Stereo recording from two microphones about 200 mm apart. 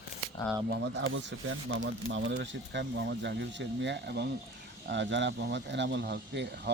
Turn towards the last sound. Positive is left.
turn(degrees=-55)  # may be behind; listen again after turning